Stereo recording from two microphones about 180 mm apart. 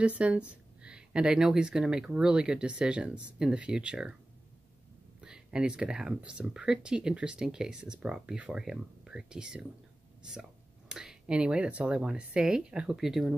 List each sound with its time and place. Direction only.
0.0 s speech: 5° right (ahead or behind)
5.2 s speech: 5° right (ahead or behind)
10.9 s speech: 5° right (ahead or behind)